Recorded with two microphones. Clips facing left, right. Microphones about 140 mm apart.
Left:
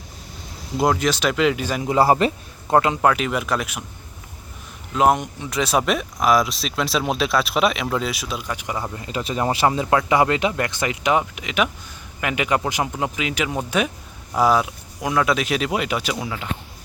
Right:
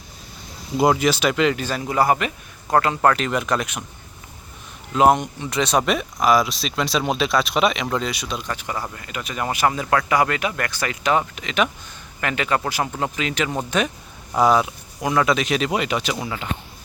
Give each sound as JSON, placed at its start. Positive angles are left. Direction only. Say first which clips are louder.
{"t": 0.8, "sound": "speech", "louder": "right 2 dB", "side_deg": -5}
{"t": 2.7, "sound": "speech", "louder": "left 1 dB", "side_deg": 15}
{"t": 4.9, "sound": "speech", "louder": "right 2 dB", "side_deg": 0}
{"t": 9.0, "sound": "speech", "louder": "left 4 dB", "side_deg": 30}